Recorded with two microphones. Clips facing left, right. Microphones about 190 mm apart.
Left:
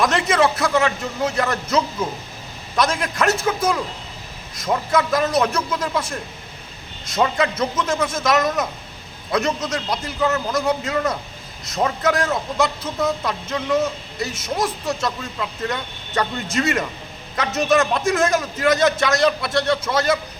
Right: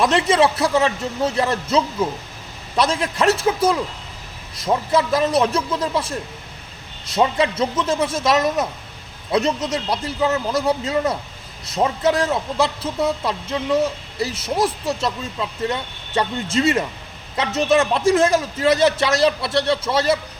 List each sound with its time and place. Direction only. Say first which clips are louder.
0.0 s speech: right 2 dB; 30° right (ahead or behind)